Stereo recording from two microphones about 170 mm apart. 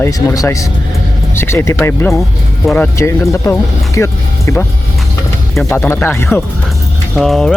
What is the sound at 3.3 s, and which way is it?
Speech, 15° left (ahead or behind).